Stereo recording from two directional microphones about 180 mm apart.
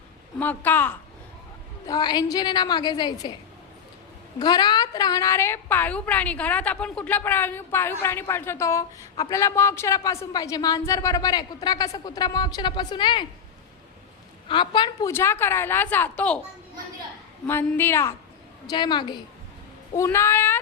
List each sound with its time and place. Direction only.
0.3 s a woman's voice: 10° left (ahead or behind)
1.9 s a woman's voice: 25° left (ahead or behind)
4.4 s a woman's voice: 25° left (ahead or behind)
14.4 s a woman's voice: 25° left (ahead or behind)
15.1 s a woman's voice: 15° left (ahead or behind)
17.4 s a woman's voice: 10° left (ahead or behind)
18.7 s a woman's voice: 25° left (ahead or behind)
20.0 s a woman's voice: 15° left (ahead or behind)